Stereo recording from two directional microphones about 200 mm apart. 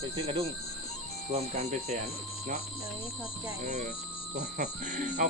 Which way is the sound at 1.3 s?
35° right (ahead or behind).